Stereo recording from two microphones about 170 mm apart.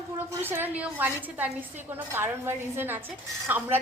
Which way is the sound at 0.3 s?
10° right (ahead or behind).